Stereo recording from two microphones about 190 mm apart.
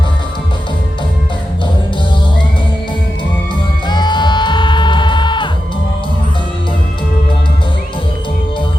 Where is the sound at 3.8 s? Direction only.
25° left (ahead or behind).